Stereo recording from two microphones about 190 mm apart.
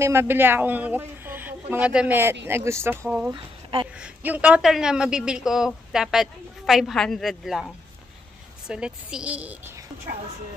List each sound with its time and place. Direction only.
0.0 s a woman's voice: 15° right (ahead or behind)
3.3 s speech: 25° right (ahead or behind)
4.0 s a woman's voice: 10° right (ahead or behind)